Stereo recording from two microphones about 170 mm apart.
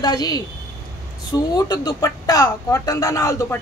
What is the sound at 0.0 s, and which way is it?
Speech, 20° left (ahead or behind).